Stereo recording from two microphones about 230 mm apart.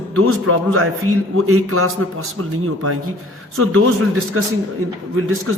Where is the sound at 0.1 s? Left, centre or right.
Right.